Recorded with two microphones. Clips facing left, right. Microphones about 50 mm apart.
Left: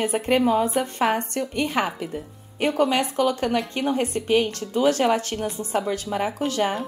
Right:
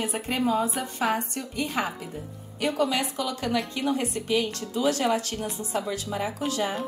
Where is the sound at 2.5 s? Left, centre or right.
Left.